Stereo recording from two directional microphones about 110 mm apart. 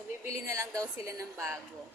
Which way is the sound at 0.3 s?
30° right (ahead or behind).